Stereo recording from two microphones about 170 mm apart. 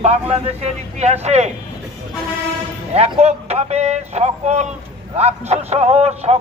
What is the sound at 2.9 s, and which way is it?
Speech, 40° right (ahead or behind).